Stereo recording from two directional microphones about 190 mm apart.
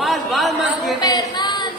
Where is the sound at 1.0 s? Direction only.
20° left (ahead or behind).